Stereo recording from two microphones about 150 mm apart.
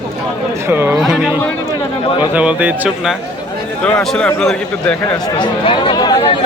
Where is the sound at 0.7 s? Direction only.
15° right (ahead or behind).